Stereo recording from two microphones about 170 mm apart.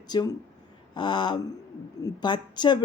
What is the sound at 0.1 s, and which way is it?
Speech, 25° left (ahead or behind).